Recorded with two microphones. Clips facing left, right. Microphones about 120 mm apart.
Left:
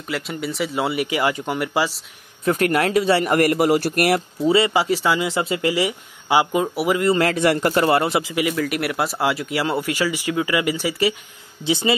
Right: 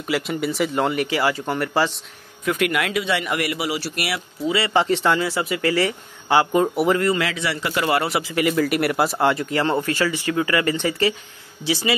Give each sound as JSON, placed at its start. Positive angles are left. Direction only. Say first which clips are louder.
{"t": 0.0, "sound": "speech", "louder": "right 3 dB", "side_deg": 0}
{"t": 2.4, "sound": "speech", "louder": "left 3 dB", "side_deg": 40}
{"t": 4.5, "sound": "a man's voice", "louder": "left 5 dB", "side_deg": 25}
{"t": 4.7, "sound": "speech", "louder": "right 1 dB", "side_deg": 5}
{"t": 5.2, "sound": "a man's voice", "louder": "left 1 dB", "side_deg": 25}
{"t": 7.2, "sound": "speech", "louder": "left 7 dB", "side_deg": 45}
{"t": 7.8, "sound": "a man's voice", "louder": "left 3 dB", "side_deg": 25}
{"t": 8.5, "sound": "speech", "louder": "right 3 dB", "side_deg": 0}
{"t": 11.6, "sound": "a man's voice", "louder": "left 2 dB", "side_deg": 20}